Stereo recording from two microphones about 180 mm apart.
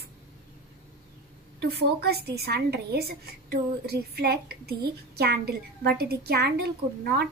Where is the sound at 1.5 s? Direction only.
65° right (ahead or behind).